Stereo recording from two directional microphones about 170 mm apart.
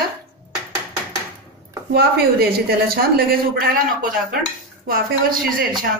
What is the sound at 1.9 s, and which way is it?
Speech, 65° right (ahead or behind).